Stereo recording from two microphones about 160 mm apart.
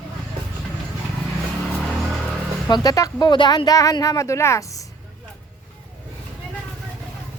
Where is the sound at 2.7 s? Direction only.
25° left (ahead or behind).